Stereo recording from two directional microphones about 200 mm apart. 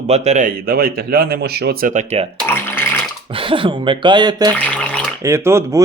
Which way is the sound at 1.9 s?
35° right (ahead or behind).